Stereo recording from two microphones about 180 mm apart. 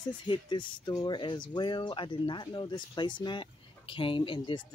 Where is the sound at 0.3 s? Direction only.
25° left (ahead or behind).